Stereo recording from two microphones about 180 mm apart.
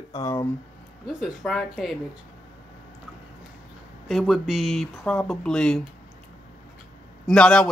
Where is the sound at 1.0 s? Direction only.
Centre (ahead or behind).